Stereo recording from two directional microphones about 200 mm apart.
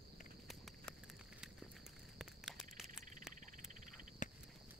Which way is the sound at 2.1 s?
Centre (ahead or behind).